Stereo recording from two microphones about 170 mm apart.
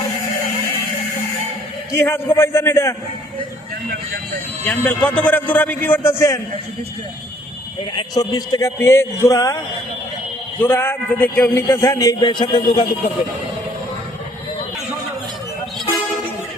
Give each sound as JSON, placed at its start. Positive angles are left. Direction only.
{"t": 1.9, "sound": "a man's voice", "side_deg": 15}
{"t": 4.6, "sound": "a man's voice", "side_deg": 10}
{"t": 7.9, "sound": "a man's voice", "side_deg": 20}
{"t": 10.6, "sound": "a man's voice", "side_deg": 15}